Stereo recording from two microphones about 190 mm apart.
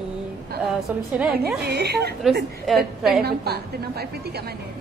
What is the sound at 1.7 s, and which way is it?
Speech, 60° right (ahead or behind).